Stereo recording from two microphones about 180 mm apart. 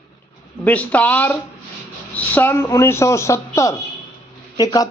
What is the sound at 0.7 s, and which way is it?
A man's voice, 10° left (ahead or behind).